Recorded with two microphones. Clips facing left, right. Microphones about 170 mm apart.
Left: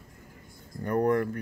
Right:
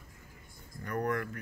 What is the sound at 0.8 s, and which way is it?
Speech, 35° left (ahead or behind).